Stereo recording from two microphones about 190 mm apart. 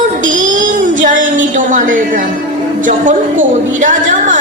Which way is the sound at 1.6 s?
45° right (ahead or behind).